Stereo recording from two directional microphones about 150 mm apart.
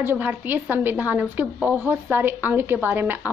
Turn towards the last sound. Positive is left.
turn(degrees=-15)  # may be behind; listen again after turning